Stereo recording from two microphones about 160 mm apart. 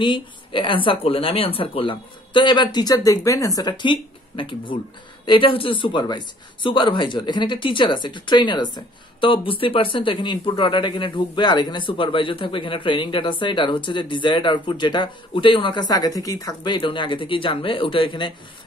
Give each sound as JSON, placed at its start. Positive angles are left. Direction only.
{"t": 0.0, "sound": "speech", "side_deg": 30}